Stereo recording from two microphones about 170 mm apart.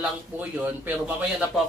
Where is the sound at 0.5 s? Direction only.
10° right (ahead or behind).